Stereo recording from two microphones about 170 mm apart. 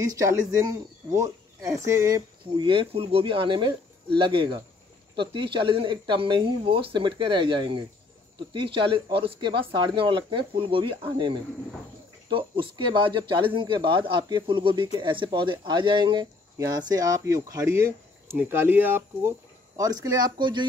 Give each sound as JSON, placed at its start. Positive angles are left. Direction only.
{"t": 0.0, "sound": "speech", "side_deg": -20}